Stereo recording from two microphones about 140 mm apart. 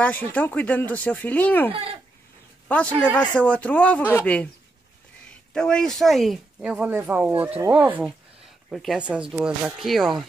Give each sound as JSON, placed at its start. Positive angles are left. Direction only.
{"t": 0.0, "sound": "speech", "side_deg": 10}
{"t": 1.7, "sound": "speech", "side_deg": -40}
{"t": 2.7, "sound": "speech", "side_deg": 10}
{"t": 5.5, "sound": "speech", "side_deg": 5}
{"t": 8.6, "sound": "a woman's voice", "side_deg": 0}